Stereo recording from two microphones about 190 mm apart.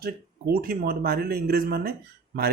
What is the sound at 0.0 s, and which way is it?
Speech, 50° right (ahead or behind).